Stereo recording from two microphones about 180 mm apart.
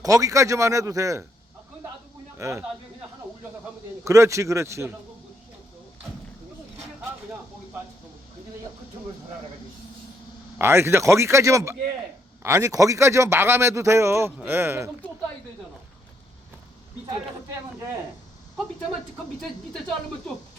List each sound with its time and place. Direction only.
0.0 s a man's voice: 20° right (ahead or behind)
2.4 s a man's voice: 15° right (ahead or behind)
4.0 s a man's voice: 15° right (ahead or behind)
10.6 s a man's voice: 15° right (ahead or behind)
19.4 s speech: 5° left (ahead or behind)